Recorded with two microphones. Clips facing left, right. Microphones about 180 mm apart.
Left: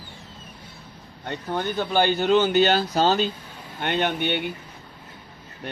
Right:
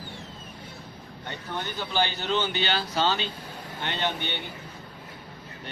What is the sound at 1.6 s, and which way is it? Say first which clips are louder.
Speech: left 6 dB; 55° left (ahead or behind).